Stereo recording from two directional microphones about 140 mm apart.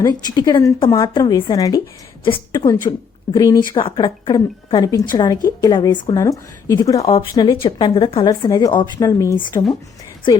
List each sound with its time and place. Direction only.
0.0 s a woman's voice: 25° left (ahead or behind)
3.8 s a woman's voice: 35° left (ahead or behind)
7.0 s speech: 45° left (ahead or behind)
7.3 s a woman's voice: 30° left (ahead or behind)
8.3 s a woman's voice: 30° left (ahead or behind)